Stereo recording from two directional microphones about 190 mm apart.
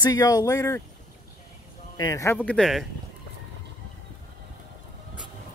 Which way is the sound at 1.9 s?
20° left (ahead or behind).